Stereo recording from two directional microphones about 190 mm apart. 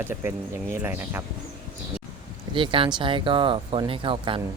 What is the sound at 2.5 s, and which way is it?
Speech, 25° right (ahead or behind).